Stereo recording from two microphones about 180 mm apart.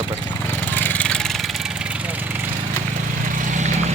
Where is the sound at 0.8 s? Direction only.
10° left (ahead or behind).